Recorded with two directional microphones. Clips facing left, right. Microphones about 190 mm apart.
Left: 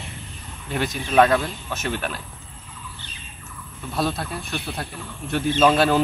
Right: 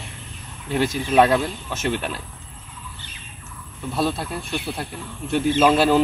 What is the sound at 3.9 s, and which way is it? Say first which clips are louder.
Speech: right 1 dB; 5° right (ahead or behind).